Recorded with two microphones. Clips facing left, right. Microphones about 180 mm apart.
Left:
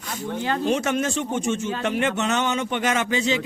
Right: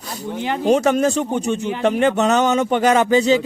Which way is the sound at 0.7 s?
40° right (ahead or behind).